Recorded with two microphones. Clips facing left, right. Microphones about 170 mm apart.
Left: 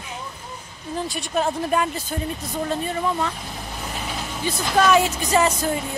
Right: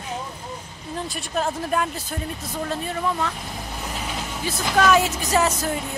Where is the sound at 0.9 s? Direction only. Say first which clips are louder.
Left 3 dB; centre (ahead or behind).